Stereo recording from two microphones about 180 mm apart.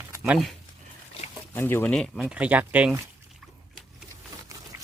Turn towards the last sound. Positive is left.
turn(degrees=-10)  # may be behind; listen again after turning